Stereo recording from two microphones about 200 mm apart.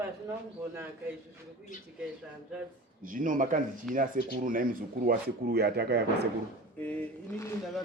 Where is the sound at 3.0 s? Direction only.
40° right (ahead or behind).